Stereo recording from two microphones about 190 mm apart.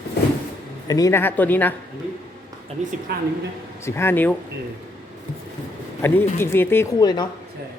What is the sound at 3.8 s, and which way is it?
Speech, 15° left (ahead or behind).